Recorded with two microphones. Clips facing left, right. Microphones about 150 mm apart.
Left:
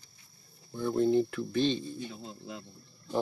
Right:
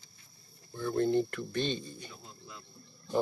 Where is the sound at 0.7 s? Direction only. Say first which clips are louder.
Left 2 dB; 15° left (ahead or behind).